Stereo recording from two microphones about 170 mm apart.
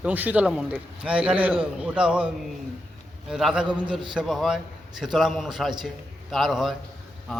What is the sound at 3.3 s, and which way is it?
A man's voice, 5° right (ahead or behind).